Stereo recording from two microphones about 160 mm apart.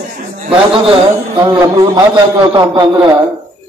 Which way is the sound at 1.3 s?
30° right (ahead or behind).